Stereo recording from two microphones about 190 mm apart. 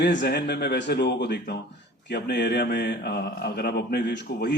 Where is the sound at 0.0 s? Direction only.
65° left (ahead or behind).